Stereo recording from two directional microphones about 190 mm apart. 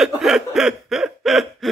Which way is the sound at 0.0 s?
Centre (ahead or behind).